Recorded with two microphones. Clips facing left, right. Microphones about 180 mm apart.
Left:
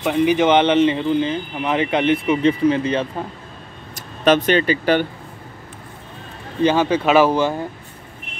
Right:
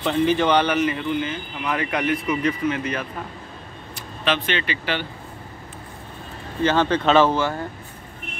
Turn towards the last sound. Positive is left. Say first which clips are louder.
# left 3 dB
turn(degrees=15)  # may be behind; listen again after turning